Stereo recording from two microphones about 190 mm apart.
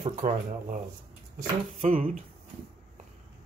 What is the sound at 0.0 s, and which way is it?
Speech, 45° right (ahead or behind).